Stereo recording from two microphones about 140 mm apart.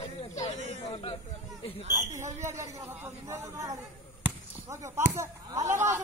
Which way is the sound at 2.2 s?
20° right (ahead or behind).